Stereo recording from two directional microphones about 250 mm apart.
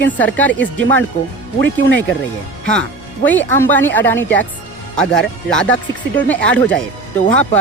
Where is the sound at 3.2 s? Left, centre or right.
Centre.